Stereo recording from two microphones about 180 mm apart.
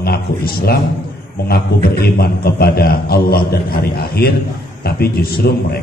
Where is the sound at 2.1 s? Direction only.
60° left (ahead or behind).